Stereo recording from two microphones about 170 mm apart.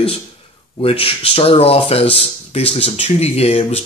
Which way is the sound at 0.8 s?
35° left (ahead or behind).